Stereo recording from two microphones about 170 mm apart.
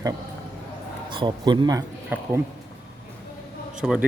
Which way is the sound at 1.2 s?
25° right (ahead or behind).